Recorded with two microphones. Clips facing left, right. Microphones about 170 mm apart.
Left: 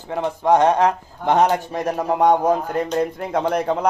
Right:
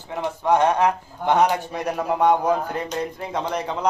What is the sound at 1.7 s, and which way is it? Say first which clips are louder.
Speech: left 3 dB; 40° left (ahead or behind).